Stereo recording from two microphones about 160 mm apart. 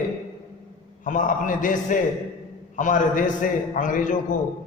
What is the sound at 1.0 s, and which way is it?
A man's voice, 55° left (ahead or behind).